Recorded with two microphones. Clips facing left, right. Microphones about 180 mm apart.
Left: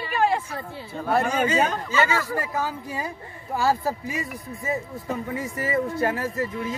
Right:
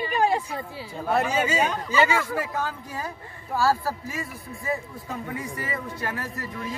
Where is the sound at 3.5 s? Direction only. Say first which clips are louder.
Even; 20° left (ahead or behind).